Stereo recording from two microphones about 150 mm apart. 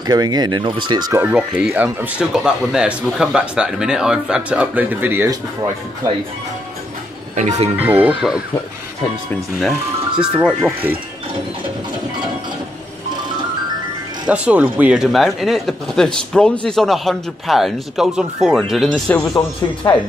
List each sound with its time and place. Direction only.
0.0 s speech: 25° right (ahead or behind)
1.1 s speech: 10° right (ahead or behind)
7.3 s speech: 50° right (ahead or behind)
7.7 s speech: 10° right (ahead or behind)
10.1 s speech: 5° right (ahead or behind)
14.2 s speech: 10° right (ahead or behind)
19.1 s speech: 25° left (ahead or behind)